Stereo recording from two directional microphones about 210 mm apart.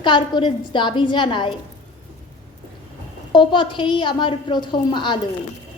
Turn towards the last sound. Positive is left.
turn(degrees=20)  # may be behind; listen again after turning